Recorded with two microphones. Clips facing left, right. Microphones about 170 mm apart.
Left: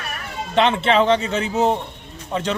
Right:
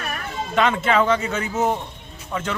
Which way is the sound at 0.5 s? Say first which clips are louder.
Left 2 dB; 25° left (ahead or behind).